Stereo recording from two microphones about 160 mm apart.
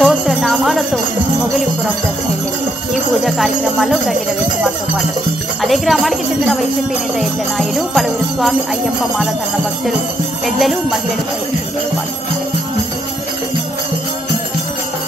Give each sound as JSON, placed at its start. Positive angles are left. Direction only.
{"t": 0.0, "sound": "jingle bell", "side_deg": 0}
{"t": 2.9, "sound": "jingle bell", "side_deg": 0}
{"t": 5.6, "sound": "jingle bell", "side_deg": 0}
{"t": 10.4, "sound": "jingle bell", "side_deg": 0}